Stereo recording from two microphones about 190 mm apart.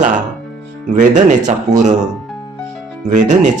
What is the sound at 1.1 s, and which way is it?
Speech, 40° right (ahead or behind).